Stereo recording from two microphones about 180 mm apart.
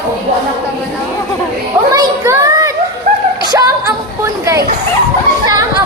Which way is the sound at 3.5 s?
20° right (ahead or behind).